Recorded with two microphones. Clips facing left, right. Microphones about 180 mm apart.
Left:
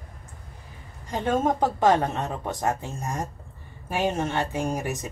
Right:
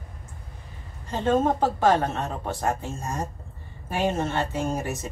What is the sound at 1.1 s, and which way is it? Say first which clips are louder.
Speech: right 2 dB; 15° left (ahead or behind).